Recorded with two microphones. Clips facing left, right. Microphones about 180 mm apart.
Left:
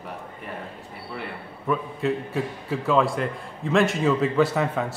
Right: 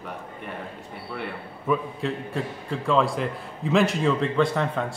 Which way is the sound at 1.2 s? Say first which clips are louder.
Right 1 dB; centre (ahead or behind).